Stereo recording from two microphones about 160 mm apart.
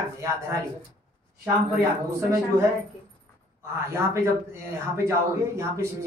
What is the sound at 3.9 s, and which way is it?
Speech, 20° right (ahead or behind).